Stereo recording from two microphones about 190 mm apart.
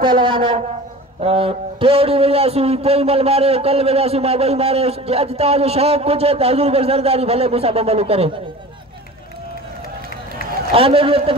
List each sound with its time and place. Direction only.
0.0 s a woman's voice: 25° right (ahead or behind)
10.7 s a woman's voice: 30° right (ahead or behind)